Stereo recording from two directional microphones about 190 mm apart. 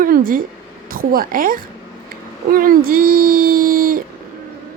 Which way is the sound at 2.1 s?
50° right (ahead or behind).